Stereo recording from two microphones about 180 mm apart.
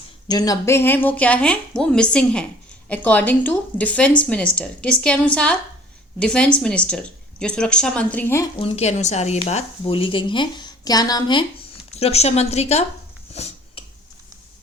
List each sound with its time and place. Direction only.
0.3 s speech: 20° left (ahead or behind)
8.6 s a woman's voice: 35° left (ahead or behind)
11.9 s a woman's voice: 35° left (ahead or behind)
13.3 s finger snapping: 35° left (ahead or behind)